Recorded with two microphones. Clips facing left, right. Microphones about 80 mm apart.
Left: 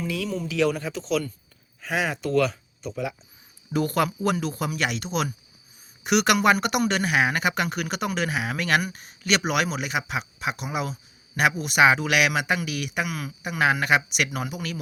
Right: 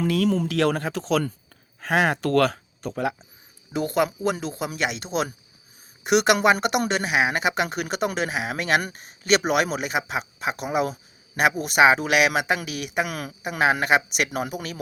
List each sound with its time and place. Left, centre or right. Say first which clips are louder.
0.0 s speech: right 7 dB; right
1.8 s speech: right 5 dB; right
3.7 s speech: right 1 dB; right
13.1 s speech: right 1 dB; right
13.4 s speech: right 1 dB; right